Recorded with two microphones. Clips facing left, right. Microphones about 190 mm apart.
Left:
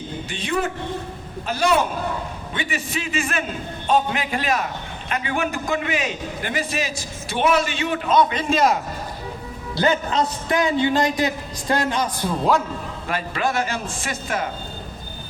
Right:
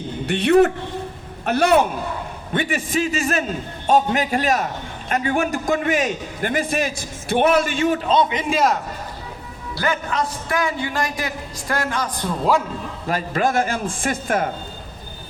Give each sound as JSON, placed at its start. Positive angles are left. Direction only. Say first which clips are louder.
{"t": 0.3, "sound": "a man's voice", "louder": "right 11 dB", "side_deg": -65}
{"t": 8.5, "sound": "a man's voice", "louder": "even", "side_deg": 0}
{"t": 9.7, "sound": "a man's voice", "louder": "left 3 dB", "side_deg": 25}
{"t": 13.1, "sound": "a man's voice", "louder": "right 3 dB", "side_deg": -40}